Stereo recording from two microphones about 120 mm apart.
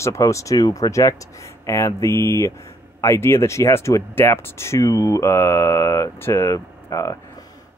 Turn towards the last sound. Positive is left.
turn(degrees=25)  # may be behind; listen again after turning